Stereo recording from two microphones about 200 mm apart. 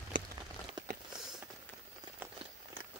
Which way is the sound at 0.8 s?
20° right (ahead or behind).